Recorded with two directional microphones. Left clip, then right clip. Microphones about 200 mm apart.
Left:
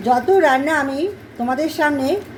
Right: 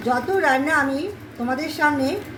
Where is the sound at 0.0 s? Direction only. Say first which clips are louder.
Left 6 dB; 25° left (ahead or behind).